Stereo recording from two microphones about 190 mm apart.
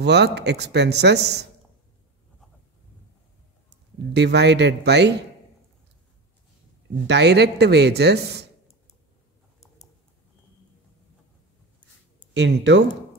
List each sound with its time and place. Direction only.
0.0 s speech: 65° right (ahead or behind)
4.1 s speech: 65° right (ahead or behind)
7.1 s speech: 60° right (ahead or behind)
12.4 s speech: 70° right (ahead or behind)